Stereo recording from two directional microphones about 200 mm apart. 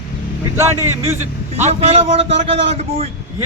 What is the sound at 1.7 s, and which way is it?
A man's voice, 30° right (ahead or behind).